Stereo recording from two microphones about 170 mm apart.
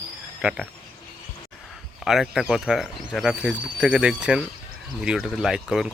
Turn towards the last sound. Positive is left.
turn(degrees=0)  # may be behind; listen again after turning